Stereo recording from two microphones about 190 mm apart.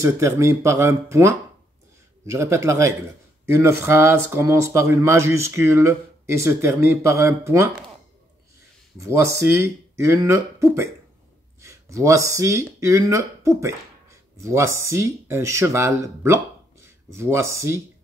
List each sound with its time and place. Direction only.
0.0 s speech: 15° right (ahead or behind)
8.9 s speech: 15° right (ahead or behind)